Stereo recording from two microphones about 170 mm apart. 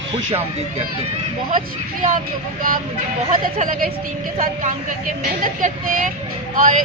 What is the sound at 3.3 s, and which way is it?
A woman's voice, 55° right (ahead or behind).